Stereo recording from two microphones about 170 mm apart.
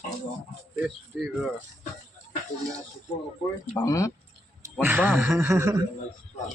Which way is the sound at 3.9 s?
20° left (ahead or behind).